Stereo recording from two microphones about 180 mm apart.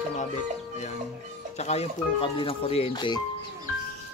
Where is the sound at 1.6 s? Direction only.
35° left (ahead or behind).